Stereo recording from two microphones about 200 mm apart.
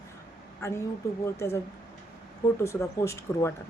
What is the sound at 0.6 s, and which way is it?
A woman's voice, 15° left (ahead or behind).